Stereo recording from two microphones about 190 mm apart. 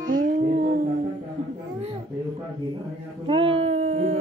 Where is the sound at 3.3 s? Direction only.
30° right (ahead or behind).